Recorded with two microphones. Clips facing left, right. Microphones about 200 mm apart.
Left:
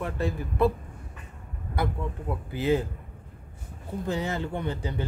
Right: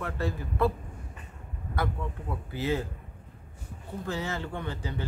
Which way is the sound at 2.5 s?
15° left (ahead or behind).